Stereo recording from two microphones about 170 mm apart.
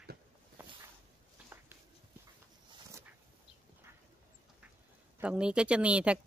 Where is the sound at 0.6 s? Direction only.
10° right (ahead or behind).